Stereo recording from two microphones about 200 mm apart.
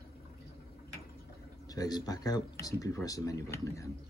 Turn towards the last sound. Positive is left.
turn(degrees=15)  # may be behind; listen again after turning